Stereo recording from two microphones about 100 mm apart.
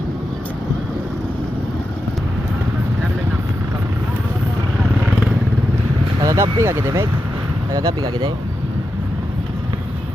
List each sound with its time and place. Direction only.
6.2 s speech: 30° right (ahead or behind)
7.7 s speech: 45° right (ahead or behind)